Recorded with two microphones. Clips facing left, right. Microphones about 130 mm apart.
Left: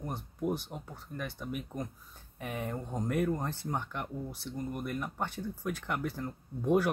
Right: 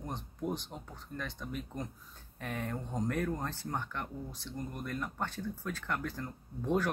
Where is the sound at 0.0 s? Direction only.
10° left (ahead or behind).